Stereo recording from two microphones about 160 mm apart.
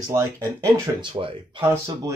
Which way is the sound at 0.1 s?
20° right (ahead or behind).